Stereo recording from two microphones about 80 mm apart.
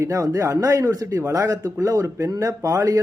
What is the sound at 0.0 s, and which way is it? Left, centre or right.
Speech, right.